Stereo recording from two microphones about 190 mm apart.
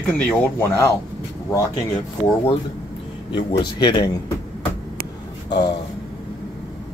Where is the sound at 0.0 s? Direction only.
10° left (ahead or behind).